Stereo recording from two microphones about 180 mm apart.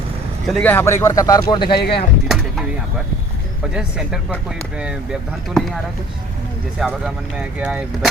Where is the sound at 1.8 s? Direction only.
65° left (ahead or behind).